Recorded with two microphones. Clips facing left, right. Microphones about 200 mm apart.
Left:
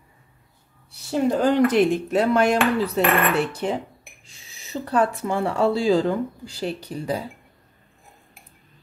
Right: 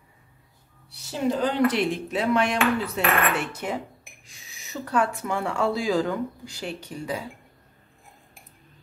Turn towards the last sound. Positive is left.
turn(degrees=35)  # may be behind; listen again after turning